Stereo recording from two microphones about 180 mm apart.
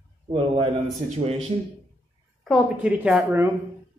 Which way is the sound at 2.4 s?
5° right (ahead or behind).